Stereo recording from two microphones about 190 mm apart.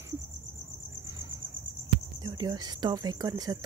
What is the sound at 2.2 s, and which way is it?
Speech, 20° right (ahead or behind).